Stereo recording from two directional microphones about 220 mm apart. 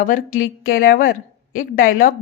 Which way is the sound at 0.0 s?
40° left (ahead or behind).